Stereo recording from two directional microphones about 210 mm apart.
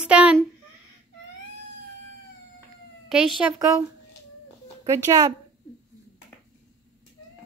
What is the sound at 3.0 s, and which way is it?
Speech, centre (ahead or behind).